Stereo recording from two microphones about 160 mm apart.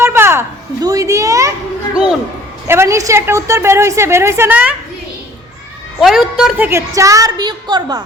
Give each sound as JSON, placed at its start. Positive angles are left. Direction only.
{"t": 0.0, "sound": "a sound", "side_deg": -15}
{"t": 2.6, "sound": "a woman's voice", "side_deg": -15}
{"t": 6.0, "sound": "a woman's voice", "side_deg": 0}
{"t": 6.7, "sound": "a woman's voice", "side_deg": -20}